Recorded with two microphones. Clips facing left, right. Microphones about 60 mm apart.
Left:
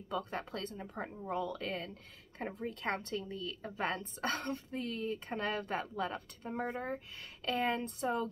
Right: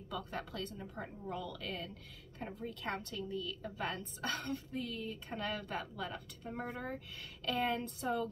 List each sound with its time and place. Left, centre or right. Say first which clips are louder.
0.1 s a woman's voice: left 4 dB; left